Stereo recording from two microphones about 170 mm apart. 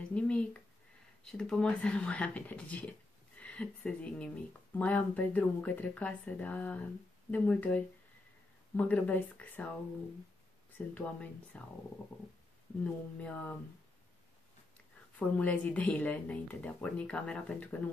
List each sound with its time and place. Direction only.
0.1 s a woman's voice: 5° left (ahead or behind)
11.0 s speech: 5° left (ahead or behind)
12.8 s speech: 10° left (ahead or behind)
15.1 s speech: 10° left (ahead or behind)